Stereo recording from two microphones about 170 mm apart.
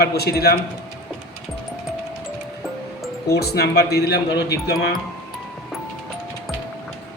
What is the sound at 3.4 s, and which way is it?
Speech, 70° left (ahead or behind).